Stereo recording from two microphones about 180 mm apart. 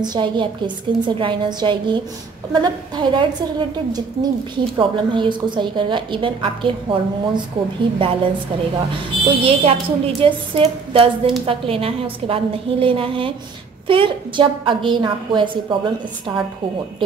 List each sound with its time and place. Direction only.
0.0 s a woman's voice: 25° right (ahead or behind)
9.4 s a woman's voice: 30° right (ahead or behind)